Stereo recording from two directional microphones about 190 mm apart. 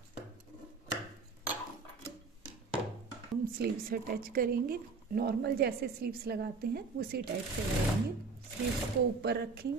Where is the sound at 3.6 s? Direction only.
50° right (ahead or behind).